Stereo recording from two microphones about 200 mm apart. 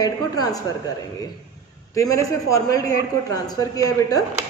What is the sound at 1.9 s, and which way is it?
A man's voice, 15° left (ahead or behind).